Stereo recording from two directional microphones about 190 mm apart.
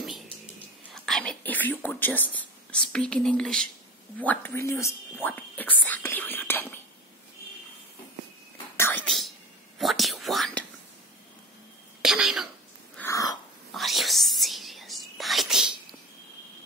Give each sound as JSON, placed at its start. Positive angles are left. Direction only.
{"t": 0.9, "sound": "speech", "side_deg": 0}
{"t": 8.7, "sound": "whispering", "side_deg": 10}
{"t": 9.8, "sound": "whispering", "side_deg": 0}
{"t": 12.0, "sound": "throat clearing", "side_deg": -5}
{"t": 12.9, "sound": "throat clearing", "side_deg": 15}
{"t": 13.7, "sound": "whispering", "side_deg": 0}